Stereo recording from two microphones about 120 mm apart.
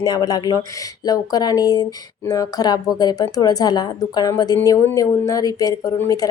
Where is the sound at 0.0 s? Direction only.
35° left (ahead or behind).